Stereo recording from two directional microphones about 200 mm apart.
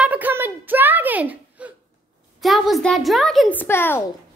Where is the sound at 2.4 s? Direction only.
Centre (ahead or behind).